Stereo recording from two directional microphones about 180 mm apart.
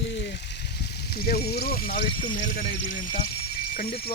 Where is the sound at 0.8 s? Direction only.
60° left (ahead or behind).